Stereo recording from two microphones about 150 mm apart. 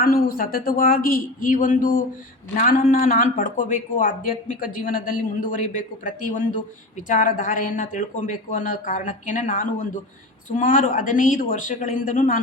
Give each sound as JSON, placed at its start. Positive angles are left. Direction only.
{"t": 0.0, "sound": "a man's voice", "side_deg": 70}